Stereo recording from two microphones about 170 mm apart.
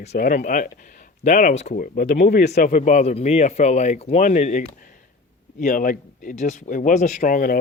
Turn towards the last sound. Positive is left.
turn(degrees=55)  # may be behind; listen again after turning